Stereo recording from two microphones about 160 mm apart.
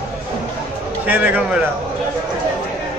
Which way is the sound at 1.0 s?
10° right (ahead or behind).